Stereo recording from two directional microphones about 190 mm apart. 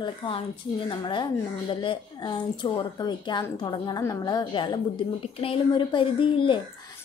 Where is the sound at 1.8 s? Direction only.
25° left (ahead or behind).